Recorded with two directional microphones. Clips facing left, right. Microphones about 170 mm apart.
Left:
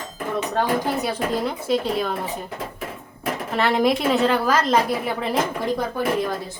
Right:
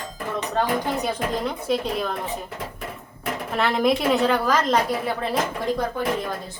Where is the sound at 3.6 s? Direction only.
Centre (ahead or behind).